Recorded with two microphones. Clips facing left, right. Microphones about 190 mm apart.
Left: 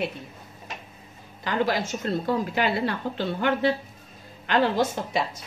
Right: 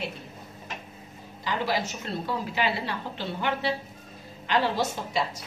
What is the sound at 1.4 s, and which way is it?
A woman's voice, 50° left (ahead or behind).